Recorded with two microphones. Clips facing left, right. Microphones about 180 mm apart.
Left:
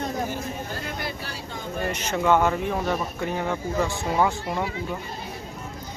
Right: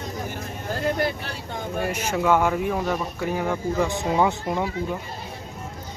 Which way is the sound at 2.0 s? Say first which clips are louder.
Even; 5° right (ahead or behind).